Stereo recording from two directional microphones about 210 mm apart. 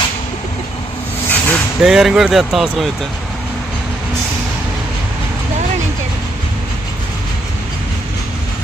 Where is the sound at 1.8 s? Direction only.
Centre (ahead or behind).